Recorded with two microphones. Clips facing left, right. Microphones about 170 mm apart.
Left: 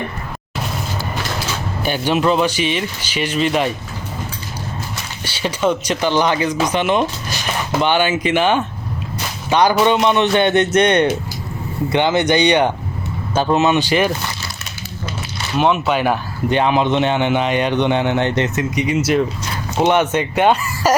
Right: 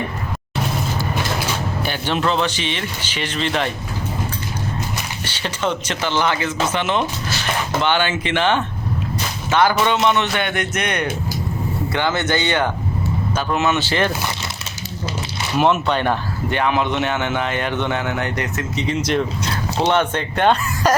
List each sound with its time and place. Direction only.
1.8 s speech: 15° left (ahead or behind)
5.2 s speech: 10° left (ahead or behind)
15.5 s speech: centre (ahead or behind)
16.5 s speech: 20° left (ahead or behind)